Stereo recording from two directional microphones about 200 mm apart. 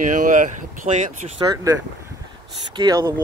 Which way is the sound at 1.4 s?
20° right (ahead or behind).